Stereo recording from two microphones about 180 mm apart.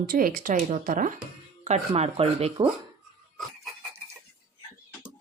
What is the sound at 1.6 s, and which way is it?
Speech, 40° right (ahead or behind).